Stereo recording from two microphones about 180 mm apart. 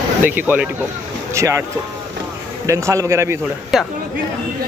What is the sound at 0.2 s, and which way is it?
Speech, 10° right (ahead or behind).